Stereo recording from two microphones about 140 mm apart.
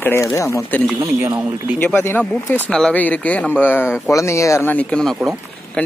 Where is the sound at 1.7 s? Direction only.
15° left (ahead or behind).